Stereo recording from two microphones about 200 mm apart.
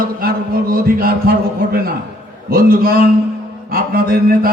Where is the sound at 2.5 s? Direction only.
45° right (ahead or behind).